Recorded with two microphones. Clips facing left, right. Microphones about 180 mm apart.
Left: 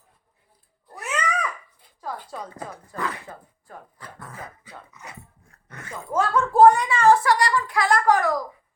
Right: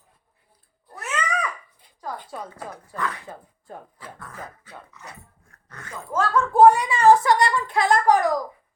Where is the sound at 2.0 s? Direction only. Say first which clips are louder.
Even; 5° left (ahead or behind).